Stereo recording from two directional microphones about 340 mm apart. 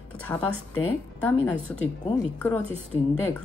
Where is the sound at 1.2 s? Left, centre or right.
Centre.